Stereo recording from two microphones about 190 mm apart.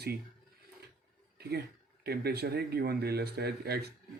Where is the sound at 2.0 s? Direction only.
55° right (ahead or behind).